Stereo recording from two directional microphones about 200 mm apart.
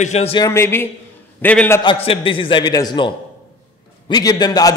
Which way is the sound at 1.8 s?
25° left (ahead or behind).